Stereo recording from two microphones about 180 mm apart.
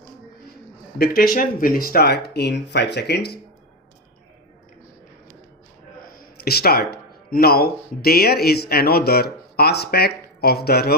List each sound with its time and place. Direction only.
0.9 s speech: 55° left (ahead or behind)
6.0 s a sound: 55° left (ahead or behind)
7.3 s speech: 55° left (ahead or behind)